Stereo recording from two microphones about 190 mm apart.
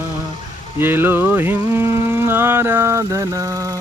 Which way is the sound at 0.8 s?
10° right (ahead or behind).